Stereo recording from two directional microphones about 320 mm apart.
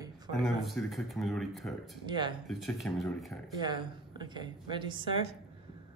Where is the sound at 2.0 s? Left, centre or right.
Centre.